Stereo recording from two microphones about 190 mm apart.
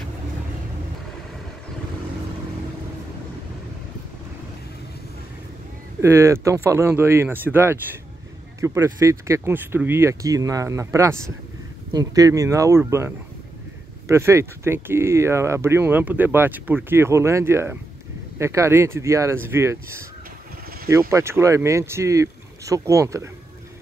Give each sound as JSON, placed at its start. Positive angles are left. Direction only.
{"t": 5.9, "sound": "speech", "side_deg": -15}
{"t": 21.1, "sound": "speech", "side_deg": -15}